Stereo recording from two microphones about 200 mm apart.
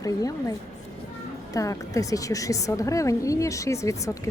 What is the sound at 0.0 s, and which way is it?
Speech, 15° left (ahead or behind).